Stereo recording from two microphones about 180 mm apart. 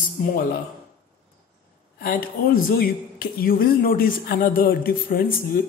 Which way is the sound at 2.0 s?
50° left (ahead or behind).